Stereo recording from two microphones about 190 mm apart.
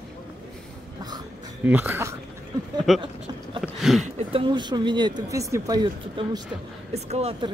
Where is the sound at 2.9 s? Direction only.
Centre (ahead or behind).